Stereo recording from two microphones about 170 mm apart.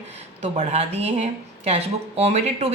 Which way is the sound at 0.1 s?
45° right (ahead or behind).